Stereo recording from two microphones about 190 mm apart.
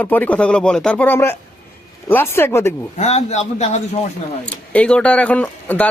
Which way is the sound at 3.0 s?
35° left (ahead or behind).